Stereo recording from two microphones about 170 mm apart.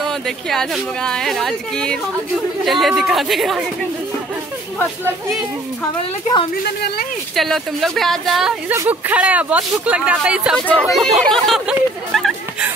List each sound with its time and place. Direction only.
0.0 s speech: 5° left (ahead or behind)
6.6 s speech: 70° left (ahead or behind)
7.3 s speech: centre (ahead or behind)
12.1 s a sound: centre (ahead or behind)